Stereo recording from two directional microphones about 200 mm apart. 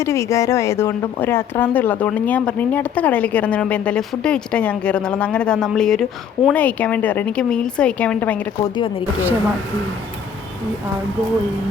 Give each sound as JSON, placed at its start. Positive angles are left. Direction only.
{"t": 0.0, "sound": "speech", "side_deg": 15}
{"t": 8.7, "sound": "speech", "side_deg": 25}